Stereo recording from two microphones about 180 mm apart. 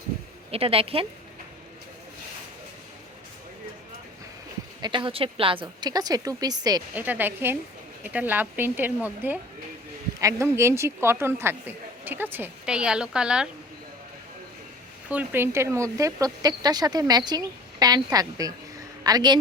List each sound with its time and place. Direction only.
0.5 s a woman's voice: 30° right (ahead or behind)
4.8 s speech: 25° right (ahead or behind)
6.9 s speech: 10° right (ahead or behind)
15.1 s speech: 10° right (ahead or behind)